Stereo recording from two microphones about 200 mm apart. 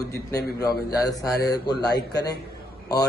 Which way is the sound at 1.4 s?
20° left (ahead or behind).